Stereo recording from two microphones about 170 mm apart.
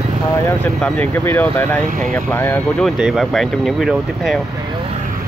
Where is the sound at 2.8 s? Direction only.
Centre (ahead or behind).